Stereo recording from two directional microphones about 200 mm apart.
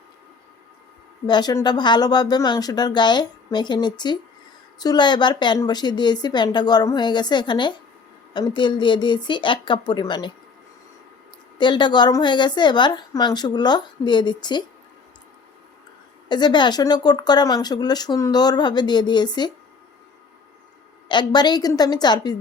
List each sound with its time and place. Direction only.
1.3 s speech: 20° left (ahead or behind)
11.5 s speech: 20° left (ahead or behind)
16.3 s speech: 20° left (ahead or behind)
21.1 s speech: 20° left (ahead or behind)